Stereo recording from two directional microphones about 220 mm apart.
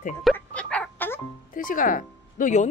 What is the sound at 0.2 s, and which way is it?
Music, centre (ahead or behind).